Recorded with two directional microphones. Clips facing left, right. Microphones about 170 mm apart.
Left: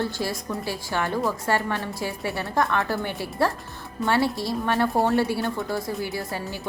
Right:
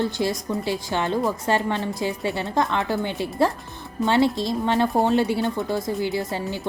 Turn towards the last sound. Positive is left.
turn(degrees=-20)  # may be behind; listen again after turning